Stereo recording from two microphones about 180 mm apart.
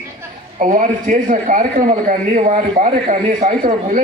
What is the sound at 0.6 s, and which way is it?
A man's voice, 45° right (ahead or behind).